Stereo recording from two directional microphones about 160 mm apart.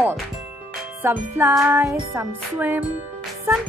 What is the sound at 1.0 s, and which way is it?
Speech, 15° right (ahead or behind).